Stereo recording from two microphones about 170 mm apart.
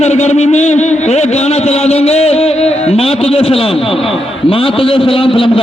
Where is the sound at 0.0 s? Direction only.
40° left (ahead or behind).